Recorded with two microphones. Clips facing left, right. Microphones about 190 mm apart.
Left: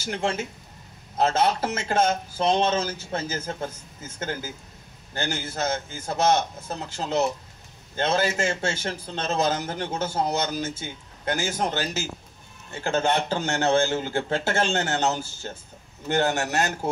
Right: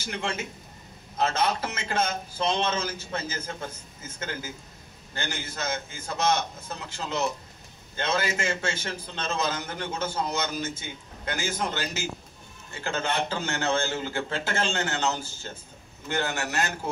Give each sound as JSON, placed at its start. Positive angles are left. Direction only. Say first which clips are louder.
{"t": 0.0, "sound": "a man's voice", "louder": "left 5 dB", "side_deg": 45}